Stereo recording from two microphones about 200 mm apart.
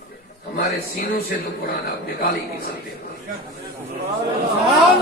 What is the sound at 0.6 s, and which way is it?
Speech, 55° left (ahead or behind).